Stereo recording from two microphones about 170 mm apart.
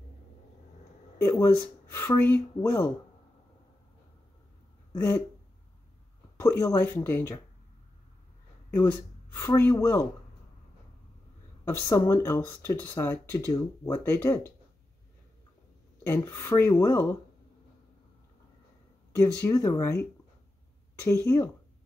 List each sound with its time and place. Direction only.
1.1 s speech: 15° left (ahead or behind)
4.9 s speech: 15° left (ahead or behind)
6.6 s speech: 15° left (ahead or behind)
9.3 s speech: 15° left (ahead or behind)
11.6 s speech: 15° left (ahead or behind)
16.1 s speech: 15° left (ahead or behind)
19.1 s speech: 20° left (ahead or behind)